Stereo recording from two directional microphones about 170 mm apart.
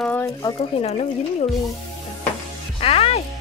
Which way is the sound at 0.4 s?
25° left (ahead or behind).